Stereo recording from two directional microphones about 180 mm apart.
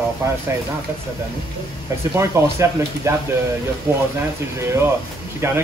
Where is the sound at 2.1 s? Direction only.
15° right (ahead or behind).